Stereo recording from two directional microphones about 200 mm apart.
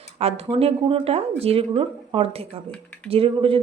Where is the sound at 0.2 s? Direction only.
30° right (ahead or behind).